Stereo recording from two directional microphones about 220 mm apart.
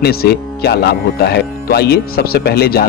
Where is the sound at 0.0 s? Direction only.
45° left (ahead or behind).